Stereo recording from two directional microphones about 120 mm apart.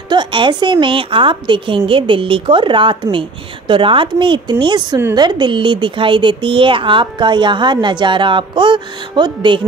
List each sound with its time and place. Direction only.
0.1 s a woman's voice: 40° right (ahead or behind)